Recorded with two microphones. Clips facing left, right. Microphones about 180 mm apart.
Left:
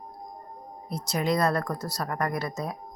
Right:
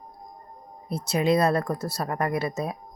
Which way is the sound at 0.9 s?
25° right (ahead or behind).